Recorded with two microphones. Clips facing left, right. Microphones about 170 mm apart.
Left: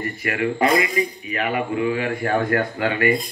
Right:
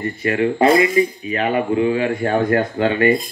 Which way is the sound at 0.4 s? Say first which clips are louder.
Right 5 dB; 30° right (ahead or behind).